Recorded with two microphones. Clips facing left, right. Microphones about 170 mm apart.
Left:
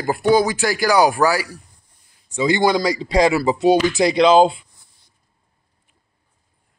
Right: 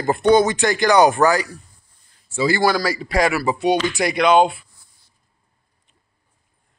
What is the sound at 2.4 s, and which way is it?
Speech, 20° left (ahead or behind).